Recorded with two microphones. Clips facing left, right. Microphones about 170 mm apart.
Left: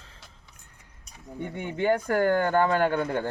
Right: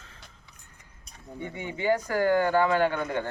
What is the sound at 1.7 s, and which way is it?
Speech, 55° left (ahead or behind).